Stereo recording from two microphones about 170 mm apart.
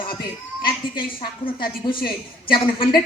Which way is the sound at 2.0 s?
30° left (ahead or behind).